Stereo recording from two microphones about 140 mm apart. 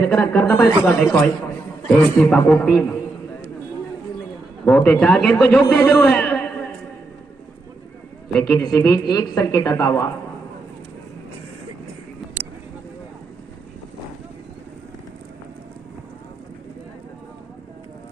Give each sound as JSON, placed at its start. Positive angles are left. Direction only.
{"t": 0.0, "sound": "a man's voice", "side_deg": 10}
{"t": 0.8, "sound": "a man's voice", "side_deg": 0}
{"t": 4.6, "sound": "a man's voice", "side_deg": 10}
{"t": 8.4, "sound": "a man's voice", "side_deg": 15}